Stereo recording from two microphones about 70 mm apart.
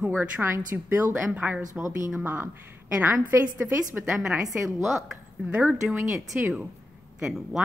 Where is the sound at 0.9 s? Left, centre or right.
Right.